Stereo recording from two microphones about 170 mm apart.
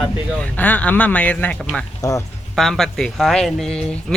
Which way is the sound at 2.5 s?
Centre (ahead or behind).